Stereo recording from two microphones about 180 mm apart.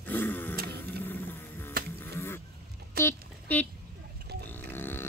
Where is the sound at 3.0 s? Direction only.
10° left (ahead or behind).